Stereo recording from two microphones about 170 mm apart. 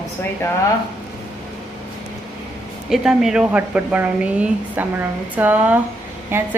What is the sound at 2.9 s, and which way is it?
A woman's voice, centre (ahead or behind).